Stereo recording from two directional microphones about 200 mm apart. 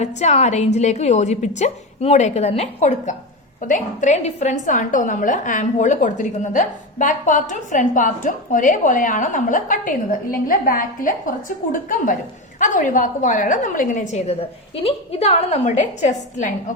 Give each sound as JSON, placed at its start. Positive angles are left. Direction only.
{"t": 0.0, "sound": "a woman's voice", "side_deg": 35}